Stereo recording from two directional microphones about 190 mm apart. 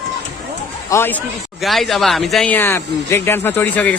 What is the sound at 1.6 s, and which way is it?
Speech, centre (ahead or behind).